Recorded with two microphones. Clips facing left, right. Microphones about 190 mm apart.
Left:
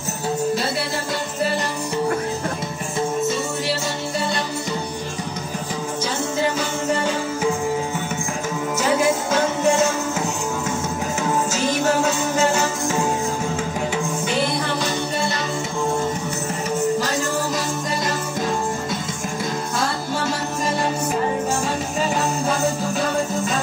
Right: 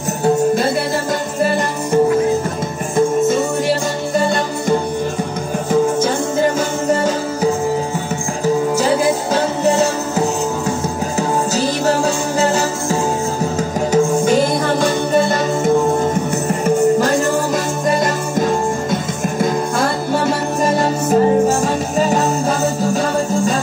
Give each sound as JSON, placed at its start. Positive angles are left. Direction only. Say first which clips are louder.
{"t": 1.4, "sound": "music", "louder": "right 5 dB", "side_deg": -50}
{"t": 3.3, "sound": "music", "louder": "right 7 dB", "side_deg": -50}
{"t": 8.7, "sound": "music", "louder": "right 4 dB", "side_deg": -35}